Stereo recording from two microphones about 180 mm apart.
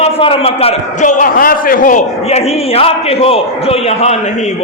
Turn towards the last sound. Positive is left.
turn(degrees=35)  # may be behind; listen again after turning